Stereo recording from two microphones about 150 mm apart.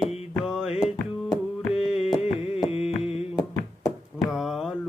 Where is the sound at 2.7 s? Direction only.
45° left (ahead or behind).